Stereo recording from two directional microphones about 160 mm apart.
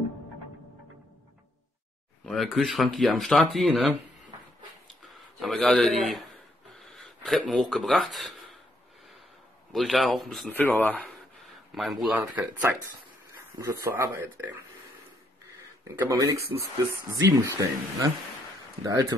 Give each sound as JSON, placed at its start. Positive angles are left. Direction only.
{"t": 2.2, "sound": "speech", "side_deg": 0}
{"t": 5.0, "sound": "speech", "side_deg": 0}
{"t": 9.7, "sound": "speech", "side_deg": 0}
{"t": 12.1, "sound": "speech", "side_deg": -10}
{"t": 13.9, "sound": "speech", "side_deg": -15}
{"t": 16.0, "sound": "speech", "side_deg": -20}